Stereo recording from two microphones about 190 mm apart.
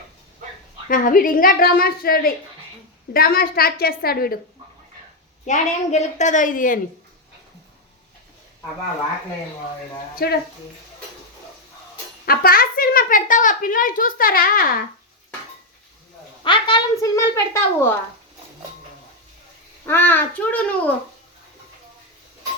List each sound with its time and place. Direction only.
0.9 s a woman's voice: 45° left (ahead or behind)
5.5 s a woman's voice: 40° left (ahead or behind)
10.2 s speech: 55° left (ahead or behind)
12.2 s a woman's voice: 50° left (ahead or behind)
16.4 s speech: 25° left (ahead or behind)
19.8 s a child's voice: 10° left (ahead or behind)